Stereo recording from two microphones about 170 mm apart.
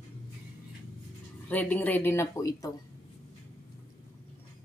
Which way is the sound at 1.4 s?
10° left (ahead or behind).